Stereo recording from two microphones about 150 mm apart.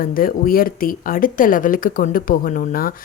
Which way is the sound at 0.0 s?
70° left (ahead or behind).